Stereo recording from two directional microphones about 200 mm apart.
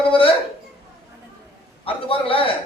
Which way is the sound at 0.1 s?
30° left (ahead or behind).